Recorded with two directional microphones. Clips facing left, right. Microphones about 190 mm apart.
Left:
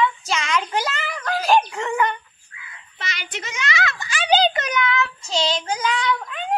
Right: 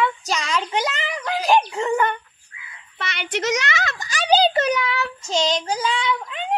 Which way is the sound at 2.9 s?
60° right (ahead or behind).